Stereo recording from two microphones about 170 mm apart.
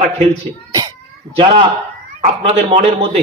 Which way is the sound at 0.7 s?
20° right (ahead or behind).